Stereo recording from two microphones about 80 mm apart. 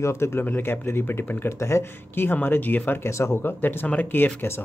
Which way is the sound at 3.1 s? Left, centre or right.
Left.